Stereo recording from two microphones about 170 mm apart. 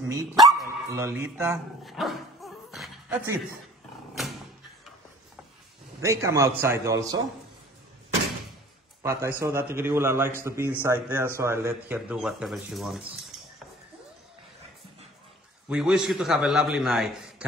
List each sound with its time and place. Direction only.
0.1 s a man's voice: 20° right (ahead or behind)
1.9 s dog: centre (ahead or behind)
3.1 s speech: 15° right (ahead or behind)
5.9 s a man's voice: 15° right (ahead or behind)
9.0 s a man's voice: 15° right (ahead or behind); by 13.0 s centre (ahead or behind)
15.7 s a man's voice: 5° right (ahead or behind)